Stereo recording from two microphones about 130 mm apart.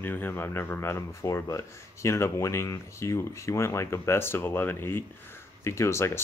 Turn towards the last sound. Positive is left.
turn(degrees=20)  # may be behind; listen again after turning